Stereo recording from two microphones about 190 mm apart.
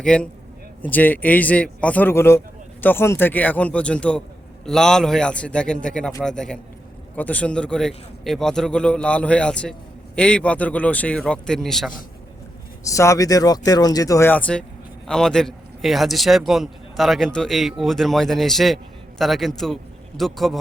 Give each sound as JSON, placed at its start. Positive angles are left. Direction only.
{"t": 0.0, "sound": "a man's voice", "side_deg": 5}
{"t": 12.8, "sound": "a man's voice", "side_deg": 15}